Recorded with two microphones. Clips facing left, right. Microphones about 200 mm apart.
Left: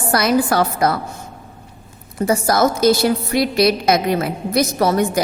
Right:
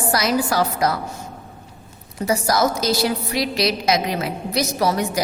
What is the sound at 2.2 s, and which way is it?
A woman's voice, 50° left (ahead or behind).